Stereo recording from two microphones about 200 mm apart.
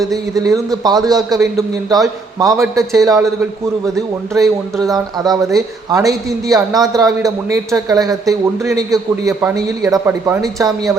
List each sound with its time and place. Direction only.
0.0 s a man's voice: 15° right (ahead or behind)